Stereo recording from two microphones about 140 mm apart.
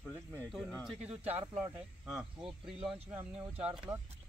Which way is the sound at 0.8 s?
5° right (ahead or behind).